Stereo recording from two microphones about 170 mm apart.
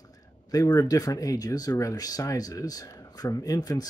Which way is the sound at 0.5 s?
20° left (ahead or behind).